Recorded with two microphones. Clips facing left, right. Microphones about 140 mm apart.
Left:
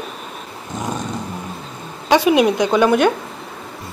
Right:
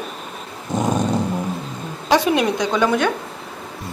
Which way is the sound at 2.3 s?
15° left (ahead or behind).